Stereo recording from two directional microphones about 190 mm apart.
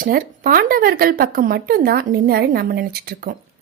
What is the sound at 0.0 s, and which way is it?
A woman's voice, 50° right (ahead or behind).